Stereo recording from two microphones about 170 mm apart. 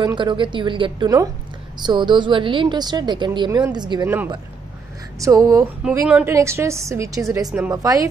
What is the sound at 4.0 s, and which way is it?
A woman's voice, 10° right (ahead or behind).